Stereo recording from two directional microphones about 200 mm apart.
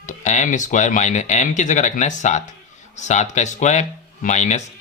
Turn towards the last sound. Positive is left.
turn(degrees=35)  # may be behind; listen again after turning